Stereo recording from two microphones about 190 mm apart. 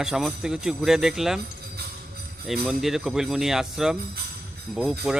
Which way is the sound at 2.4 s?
Centre (ahead or behind).